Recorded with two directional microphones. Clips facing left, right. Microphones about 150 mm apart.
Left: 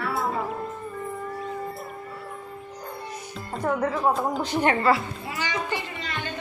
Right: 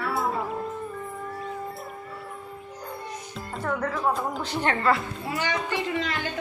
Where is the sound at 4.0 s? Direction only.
Centre (ahead or behind).